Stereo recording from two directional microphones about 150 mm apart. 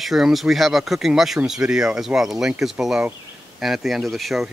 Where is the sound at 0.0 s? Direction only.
Centre (ahead or behind).